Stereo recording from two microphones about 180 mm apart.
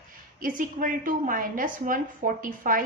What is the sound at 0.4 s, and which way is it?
A woman's voice, 50° right (ahead or behind).